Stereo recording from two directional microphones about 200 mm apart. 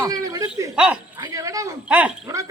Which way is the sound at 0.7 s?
5° right (ahead or behind).